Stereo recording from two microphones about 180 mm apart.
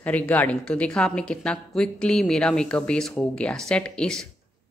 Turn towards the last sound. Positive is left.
turn(degrees=5)  # may be behind; listen again after turning